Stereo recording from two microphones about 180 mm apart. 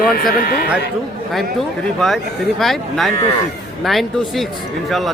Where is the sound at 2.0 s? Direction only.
Centre (ahead or behind).